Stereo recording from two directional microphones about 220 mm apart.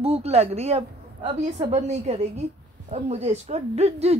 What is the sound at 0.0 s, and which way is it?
Speech, 25° right (ahead or behind).